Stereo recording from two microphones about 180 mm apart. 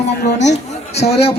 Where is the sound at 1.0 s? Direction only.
35° left (ahead or behind).